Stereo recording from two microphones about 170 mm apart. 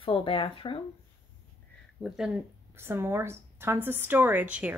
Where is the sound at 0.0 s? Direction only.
30° left (ahead or behind).